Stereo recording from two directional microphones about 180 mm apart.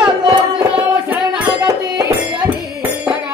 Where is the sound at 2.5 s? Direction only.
10° right (ahead or behind).